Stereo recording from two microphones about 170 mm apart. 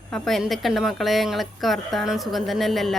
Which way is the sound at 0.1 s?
Centre (ahead or behind).